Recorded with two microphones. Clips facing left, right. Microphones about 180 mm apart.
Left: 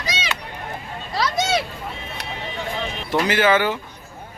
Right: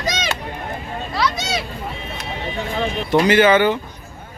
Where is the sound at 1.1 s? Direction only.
45° left (ahead or behind).